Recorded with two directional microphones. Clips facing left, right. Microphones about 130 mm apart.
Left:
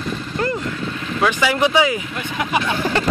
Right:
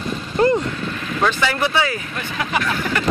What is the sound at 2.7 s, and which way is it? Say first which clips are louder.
Speech: left 2 dB; 30° left (ahead or behind).